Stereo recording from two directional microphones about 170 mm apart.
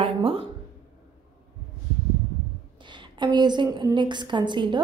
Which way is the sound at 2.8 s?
25° right (ahead or behind).